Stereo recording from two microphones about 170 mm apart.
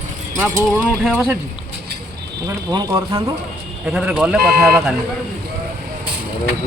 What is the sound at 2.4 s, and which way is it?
Speech, 20° right (ahead or behind).